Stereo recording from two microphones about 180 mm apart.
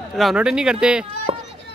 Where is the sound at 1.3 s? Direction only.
35° right (ahead or behind).